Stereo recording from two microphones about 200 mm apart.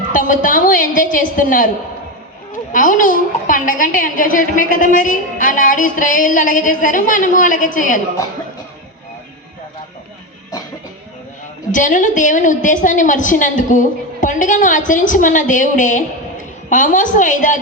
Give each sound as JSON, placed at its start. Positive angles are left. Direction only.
{"t": 0.1, "sound": "a child's voice", "side_deg": 40}
{"t": 11.7, "sound": "a child's voice", "side_deg": 40}